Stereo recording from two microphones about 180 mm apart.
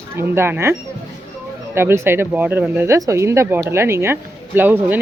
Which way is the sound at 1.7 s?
15° right (ahead or behind).